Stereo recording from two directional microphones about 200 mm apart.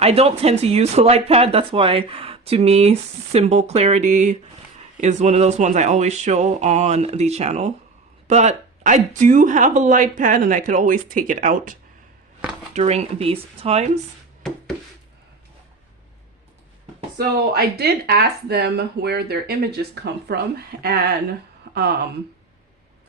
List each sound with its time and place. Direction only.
0.0 s speech: 30° right (ahead or behind)
17.2 s speech: 55° right (ahead or behind)
21.7 s a sound: 60° right (ahead or behind)